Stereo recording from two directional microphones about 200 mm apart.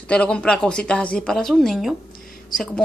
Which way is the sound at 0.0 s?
5° left (ahead or behind).